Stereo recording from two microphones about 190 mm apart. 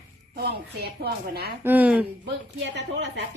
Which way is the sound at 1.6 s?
10° right (ahead or behind).